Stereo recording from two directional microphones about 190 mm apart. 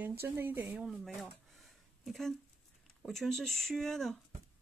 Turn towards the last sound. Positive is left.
turn(degrees=0)  # may be behind; listen again after turning